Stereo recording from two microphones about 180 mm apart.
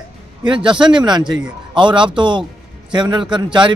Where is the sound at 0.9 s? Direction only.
25° right (ahead or behind).